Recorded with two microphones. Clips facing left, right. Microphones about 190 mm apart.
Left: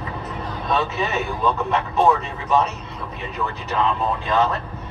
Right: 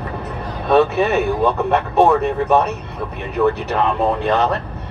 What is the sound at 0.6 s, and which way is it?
Speech, 60° right (ahead or behind).